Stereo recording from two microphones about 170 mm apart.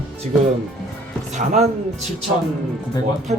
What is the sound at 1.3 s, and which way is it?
Speech, 40° right (ahead or behind).